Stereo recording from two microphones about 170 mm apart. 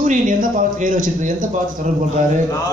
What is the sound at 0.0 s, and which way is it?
A man's voice, 50° right (ahead or behind).